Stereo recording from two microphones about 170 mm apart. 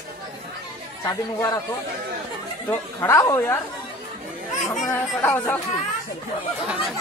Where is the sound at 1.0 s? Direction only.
20° left (ahead or behind).